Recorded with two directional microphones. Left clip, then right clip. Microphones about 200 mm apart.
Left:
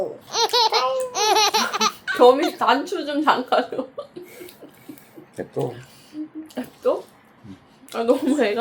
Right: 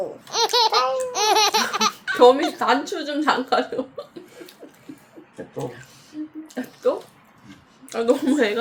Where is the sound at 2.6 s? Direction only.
15° right (ahead or behind).